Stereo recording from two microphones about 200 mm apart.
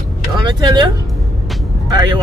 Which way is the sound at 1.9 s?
20° right (ahead or behind).